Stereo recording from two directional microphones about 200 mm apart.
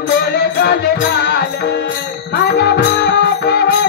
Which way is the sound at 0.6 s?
55° left (ahead or behind).